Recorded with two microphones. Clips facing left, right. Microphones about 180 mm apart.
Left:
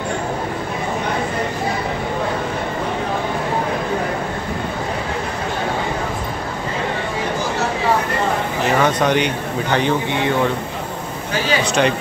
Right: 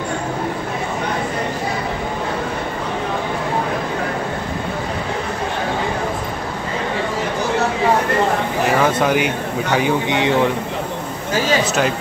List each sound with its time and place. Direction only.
8.7 s speech: 5° right (ahead or behind)
10.0 s speech: 20° right (ahead or behind)
11.6 s speech: 5° right (ahead or behind)